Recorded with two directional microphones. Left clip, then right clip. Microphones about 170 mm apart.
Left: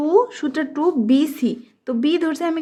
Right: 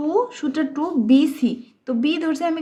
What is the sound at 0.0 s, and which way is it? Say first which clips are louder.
A woman's voice: left 4 dB; 30° left (ahead or behind).